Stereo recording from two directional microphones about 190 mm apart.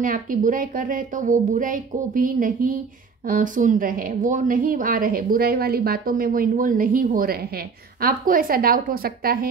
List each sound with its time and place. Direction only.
0.0 s a woman's voice: 45° right (ahead or behind)